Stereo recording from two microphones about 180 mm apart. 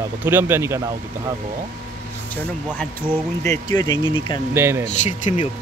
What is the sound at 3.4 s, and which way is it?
Speech, 20° left (ahead or behind).